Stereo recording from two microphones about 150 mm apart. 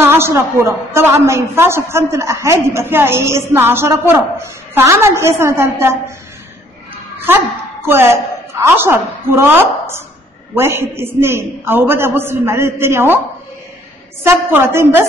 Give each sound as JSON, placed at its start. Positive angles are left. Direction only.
{"t": 0.0, "sound": "a woman's voice", "side_deg": -15}
{"t": 7.8, "sound": "a woman's voice", "side_deg": -15}
{"t": 14.2, "sound": "a woman's voice", "side_deg": -15}